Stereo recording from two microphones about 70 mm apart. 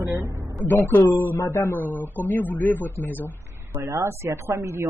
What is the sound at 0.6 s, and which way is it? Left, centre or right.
Speech, left.